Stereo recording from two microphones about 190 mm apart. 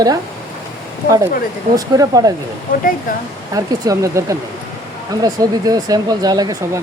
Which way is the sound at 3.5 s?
15° right (ahead or behind).